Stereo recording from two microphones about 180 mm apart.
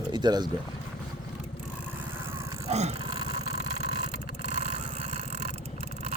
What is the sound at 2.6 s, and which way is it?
Dog, 35° right (ahead or behind).